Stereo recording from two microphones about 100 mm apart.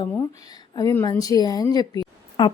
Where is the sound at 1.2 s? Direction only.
40° left (ahead or behind).